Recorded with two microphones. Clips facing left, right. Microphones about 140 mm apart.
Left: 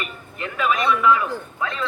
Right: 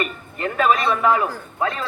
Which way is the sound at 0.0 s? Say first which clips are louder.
Right 6 dB; 45° right (ahead or behind).